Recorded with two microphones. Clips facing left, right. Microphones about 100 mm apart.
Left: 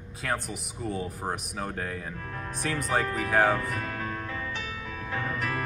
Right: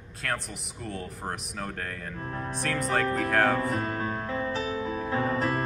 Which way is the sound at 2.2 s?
30° right (ahead or behind).